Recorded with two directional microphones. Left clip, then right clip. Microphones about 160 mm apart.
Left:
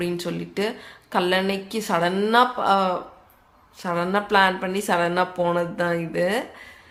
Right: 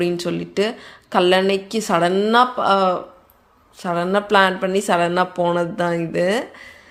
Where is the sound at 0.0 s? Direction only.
30° right (ahead or behind).